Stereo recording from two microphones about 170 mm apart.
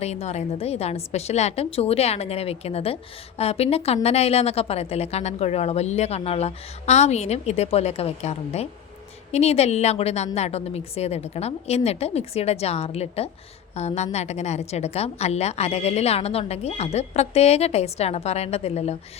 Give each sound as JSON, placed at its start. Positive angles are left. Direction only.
{"t": 0.0, "sound": "a woman's voice", "side_deg": 40}